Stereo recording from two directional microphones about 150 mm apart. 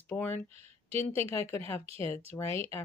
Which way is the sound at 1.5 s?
15° left (ahead or behind).